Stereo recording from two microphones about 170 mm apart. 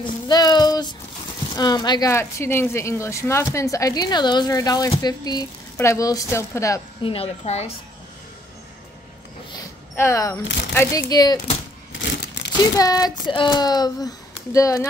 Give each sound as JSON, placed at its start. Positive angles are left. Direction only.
{"t": 0.3, "sound": "child singing", "side_deg": 25}
{"t": 1.5, "sound": "a woman's voice", "side_deg": 25}
{"t": 7.0, "sound": "speech", "side_deg": 35}
{"t": 9.9, "sound": "a woman's voice", "side_deg": 15}
{"t": 12.4, "sound": "a sound", "side_deg": 90}
{"t": 12.7, "sound": "a woman's voice", "side_deg": 20}